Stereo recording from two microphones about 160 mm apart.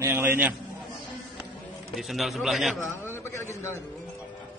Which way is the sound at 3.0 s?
15° left (ahead or behind).